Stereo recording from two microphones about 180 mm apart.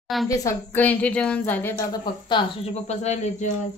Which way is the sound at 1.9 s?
25° left (ahead or behind).